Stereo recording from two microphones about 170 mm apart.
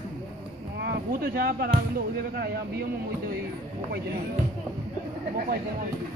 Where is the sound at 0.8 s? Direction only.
70° right (ahead or behind).